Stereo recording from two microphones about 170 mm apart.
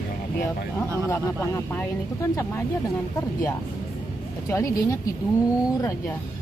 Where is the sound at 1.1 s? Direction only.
15° left (ahead or behind).